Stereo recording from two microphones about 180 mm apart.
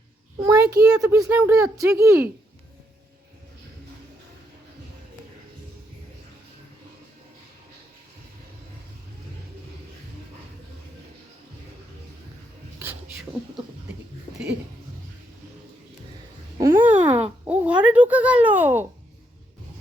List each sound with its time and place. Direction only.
0.4 s a child's voice: 20° right (ahead or behind)
1.3 s speech: 5° right (ahead or behind)
16.6 s a sound: 15° right (ahead or behind)